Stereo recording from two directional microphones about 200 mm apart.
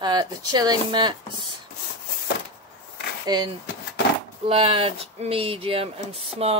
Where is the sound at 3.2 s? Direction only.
20° right (ahead or behind).